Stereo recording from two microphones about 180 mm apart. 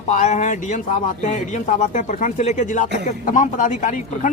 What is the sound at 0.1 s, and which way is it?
Speech, 40° left (ahead or behind).